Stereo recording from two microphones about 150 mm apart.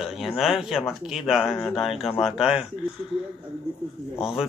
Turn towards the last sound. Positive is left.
turn(degrees=-5)  # may be behind; listen again after turning